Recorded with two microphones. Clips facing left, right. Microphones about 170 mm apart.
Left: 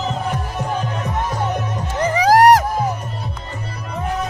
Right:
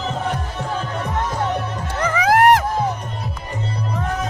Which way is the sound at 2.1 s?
35° left (ahead or behind).